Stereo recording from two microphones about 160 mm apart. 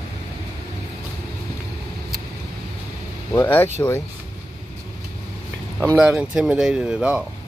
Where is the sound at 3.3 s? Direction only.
15° left (ahead or behind).